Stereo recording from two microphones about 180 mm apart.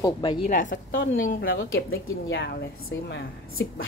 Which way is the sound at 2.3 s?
65° left (ahead or behind).